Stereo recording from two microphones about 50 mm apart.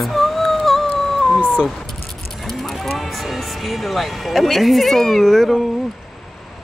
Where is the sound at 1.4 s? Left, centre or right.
Right.